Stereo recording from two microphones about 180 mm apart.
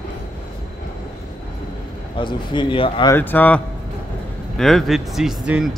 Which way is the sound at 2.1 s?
25° left (ahead or behind).